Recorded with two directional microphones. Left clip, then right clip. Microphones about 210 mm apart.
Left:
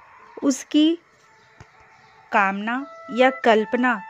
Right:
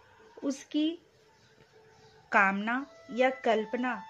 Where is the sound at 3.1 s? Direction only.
45° left (ahead or behind).